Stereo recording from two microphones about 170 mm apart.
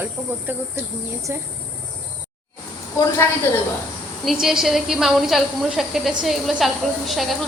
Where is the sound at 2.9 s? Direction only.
15° left (ahead or behind).